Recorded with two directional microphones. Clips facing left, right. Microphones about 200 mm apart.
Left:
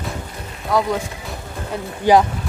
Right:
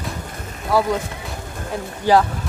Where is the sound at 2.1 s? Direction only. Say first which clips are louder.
Left 2 dB; 15° left (ahead or behind).